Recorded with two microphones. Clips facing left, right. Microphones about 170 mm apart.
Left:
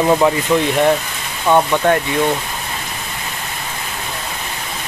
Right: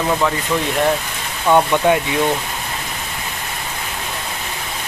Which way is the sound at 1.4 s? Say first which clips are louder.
Even; 5° right (ahead or behind).